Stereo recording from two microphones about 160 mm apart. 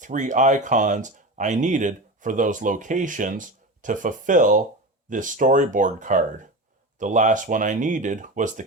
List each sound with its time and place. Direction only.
0.0 s speech: 50° right (ahead or behind)